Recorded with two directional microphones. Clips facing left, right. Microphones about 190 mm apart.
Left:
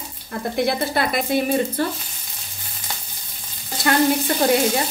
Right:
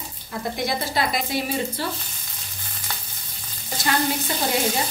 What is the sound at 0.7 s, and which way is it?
Speech, 55° left (ahead or behind).